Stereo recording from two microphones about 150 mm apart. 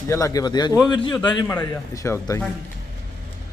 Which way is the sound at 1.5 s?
15° left (ahead or behind).